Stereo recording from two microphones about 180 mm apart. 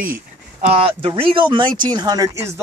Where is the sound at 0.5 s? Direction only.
30° right (ahead or behind).